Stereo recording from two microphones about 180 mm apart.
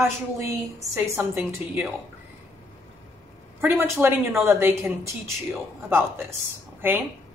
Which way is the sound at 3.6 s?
10° right (ahead or behind).